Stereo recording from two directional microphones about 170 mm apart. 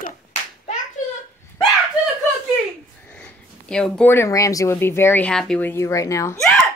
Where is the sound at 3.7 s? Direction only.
5° left (ahead or behind).